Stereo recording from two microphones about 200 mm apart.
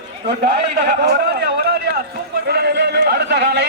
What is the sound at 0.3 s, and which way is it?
A man's voice, 55° right (ahead or behind).